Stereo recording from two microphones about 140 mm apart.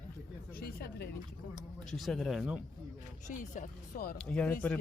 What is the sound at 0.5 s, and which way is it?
Speech, 90° left.